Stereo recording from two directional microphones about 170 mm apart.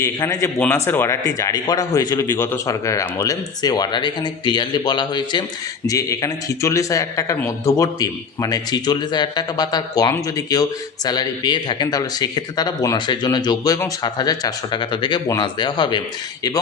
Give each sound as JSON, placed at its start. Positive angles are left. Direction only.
{"t": 0.0, "sound": "a man's voice", "side_deg": 20}